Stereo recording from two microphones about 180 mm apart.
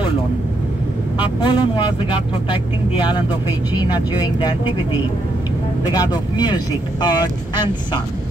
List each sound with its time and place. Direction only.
1.2 s speech: 25° left (ahead or behind)
5.9 s speech: 20° left (ahead or behind)